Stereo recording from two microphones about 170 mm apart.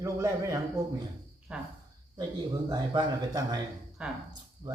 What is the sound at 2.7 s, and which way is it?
Speech, 20° right (ahead or behind).